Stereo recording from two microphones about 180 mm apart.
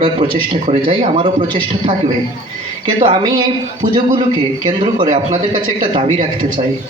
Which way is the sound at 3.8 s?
50° right (ahead or behind).